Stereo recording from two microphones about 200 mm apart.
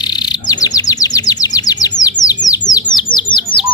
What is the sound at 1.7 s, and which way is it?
Bird, 20° left (ahead or behind).